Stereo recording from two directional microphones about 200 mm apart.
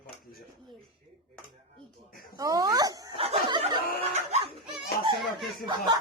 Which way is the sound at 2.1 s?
50° left (ahead or behind).